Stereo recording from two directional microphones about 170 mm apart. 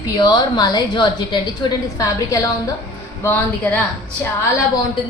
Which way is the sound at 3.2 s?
10° left (ahead or behind).